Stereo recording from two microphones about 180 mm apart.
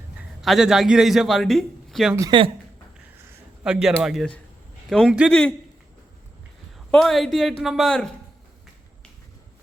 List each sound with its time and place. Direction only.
0.2 s a man's voice: centre (ahead or behind)
2.1 s speech: 25° right (ahead or behind)
3.6 s speech: 5° right (ahead or behind)
6.7 s a man's voice: centre (ahead or behind)